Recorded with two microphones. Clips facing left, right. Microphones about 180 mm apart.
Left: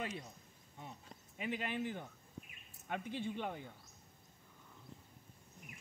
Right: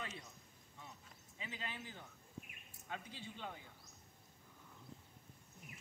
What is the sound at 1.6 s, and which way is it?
Speech, 55° left (ahead or behind).